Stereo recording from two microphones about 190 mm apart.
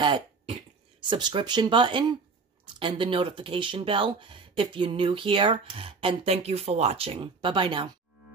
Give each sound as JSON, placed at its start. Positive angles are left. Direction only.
{"t": 0.0, "sound": "throat clearing", "side_deg": -30}
{"t": 2.6, "sound": "speech", "side_deg": -25}